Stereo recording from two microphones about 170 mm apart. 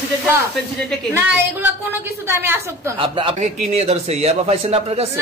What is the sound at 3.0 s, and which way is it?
Speech, 30° right (ahead or behind).